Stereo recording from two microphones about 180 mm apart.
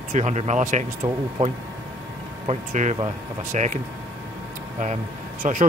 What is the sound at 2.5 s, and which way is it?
A man's voice, 45° right (ahead or behind).